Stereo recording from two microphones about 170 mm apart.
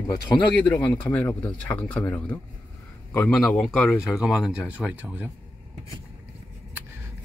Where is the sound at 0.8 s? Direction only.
10° left (ahead or behind); by 5.2 s 10° right (ahead or behind).